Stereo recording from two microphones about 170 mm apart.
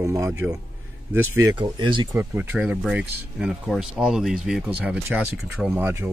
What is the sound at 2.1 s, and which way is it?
Speech, 10° right (ahead or behind).